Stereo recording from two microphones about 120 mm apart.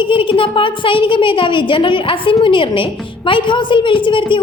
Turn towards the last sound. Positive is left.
turn(degrees=45)  # may be behind; listen again after turning